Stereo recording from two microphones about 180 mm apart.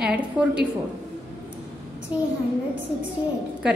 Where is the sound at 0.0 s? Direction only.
5° right (ahead or behind).